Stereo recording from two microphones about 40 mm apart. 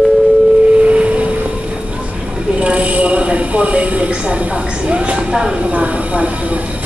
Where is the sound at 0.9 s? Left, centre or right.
Right.